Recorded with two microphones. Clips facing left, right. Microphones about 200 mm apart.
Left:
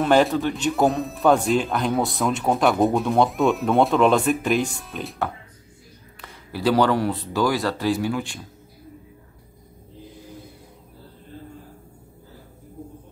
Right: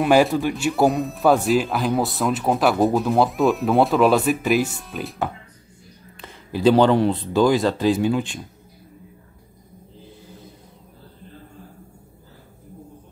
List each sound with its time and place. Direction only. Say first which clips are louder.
0.0 s speech: right 1 dB; 10° right (ahead or behind)
6.2 s speech: right 5 dB; 20° right (ahead or behind)